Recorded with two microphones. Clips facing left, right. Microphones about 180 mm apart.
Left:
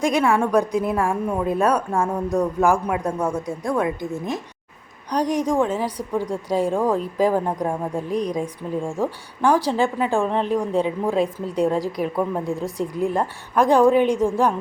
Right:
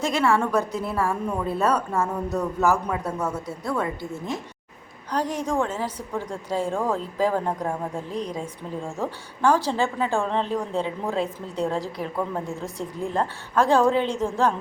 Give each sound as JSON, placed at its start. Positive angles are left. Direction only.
{"t": 0.0, "sound": "a woman's voice", "side_deg": 15}